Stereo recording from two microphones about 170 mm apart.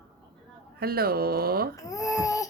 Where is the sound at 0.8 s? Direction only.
65° right (ahead or behind).